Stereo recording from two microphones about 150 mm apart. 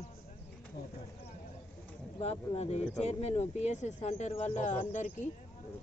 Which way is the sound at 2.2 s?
45° left (ahead or behind).